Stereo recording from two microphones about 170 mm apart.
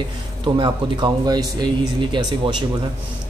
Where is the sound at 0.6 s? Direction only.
25° right (ahead or behind).